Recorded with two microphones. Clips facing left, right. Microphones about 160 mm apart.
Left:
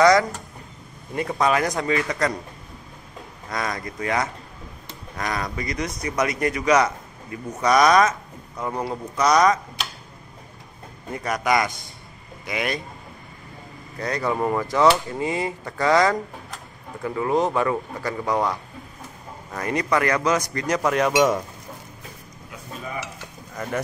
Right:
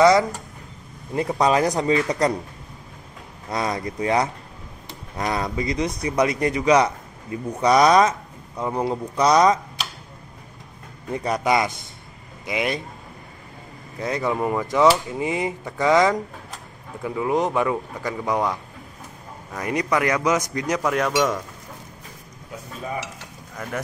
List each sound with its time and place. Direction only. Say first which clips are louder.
0.0 s a sound: right 1 dB; 25° right (ahead or behind)
1.1 s a man's voice: right 2 dB; 30° right (ahead or behind)
3.4 s a man's voice: right 3 dB; 25° right (ahead or behind)
8.5 s speech: right 3 dB; 10° right (ahead or behind)
8.8 s a man's voice: right 2 dB; 25° right (ahead or behind)
11.1 s a man's voice: right 1 dB; 25° right (ahead or behind)
14.2 s speech: left 1 dB; 5° right (ahead or behind)
14.6 s speech: right 2 dB; 15° right (ahead or behind)
19.5 s speech: even; 15° right (ahead or behind)
20.8 s speech: left 3 dB; centre (ahead or behind)
21.1 s speech: left 3 dB; 15° left (ahead or behind)
23.5 s a sound: left 2 dB; 5° left (ahead or behind)